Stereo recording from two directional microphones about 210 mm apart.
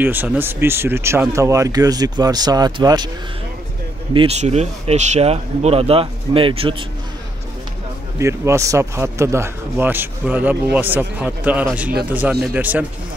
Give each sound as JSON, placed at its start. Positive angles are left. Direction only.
{"t": 0.0, "sound": "speech", "side_deg": -10}
{"t": 4.1, "sound": "speech", "side_deg": -25}
{"t": 8.2, "sound": "speech", "side_deg": -15}